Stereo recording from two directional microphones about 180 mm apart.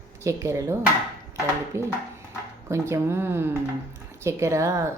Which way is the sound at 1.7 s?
15° right (ahead or behind).